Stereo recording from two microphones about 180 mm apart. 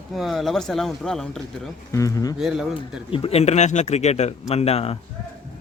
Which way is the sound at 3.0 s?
30° left (ahead or behind).